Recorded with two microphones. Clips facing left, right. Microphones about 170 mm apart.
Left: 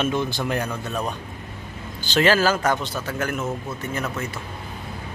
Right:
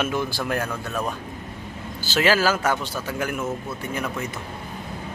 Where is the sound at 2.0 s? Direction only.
5° right (ahead or behind).